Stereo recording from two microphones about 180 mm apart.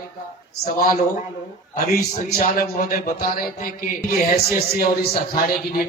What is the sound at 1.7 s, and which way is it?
A man's voice, 45° left (ahead or behind).